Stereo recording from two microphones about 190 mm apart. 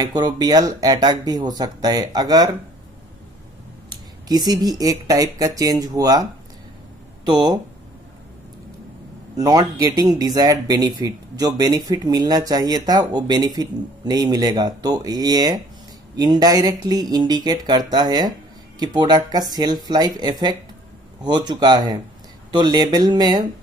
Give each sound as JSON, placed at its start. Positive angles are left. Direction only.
{"t": 0.0, "sound": "speech", "side_deg": -20}
{"t": 4.3, "sound": "speech", "side_deg": -20}
{"t": 7.2, "sound": "speech", "side_deg": -20}
{"t": 9.4, "sound": "speech", "side_deg": -20}